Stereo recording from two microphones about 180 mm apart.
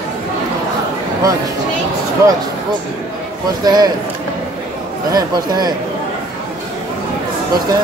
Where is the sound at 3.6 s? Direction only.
20° right (ahead or behind).